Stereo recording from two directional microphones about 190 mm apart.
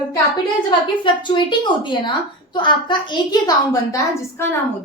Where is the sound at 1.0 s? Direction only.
25° left (ahead or behind).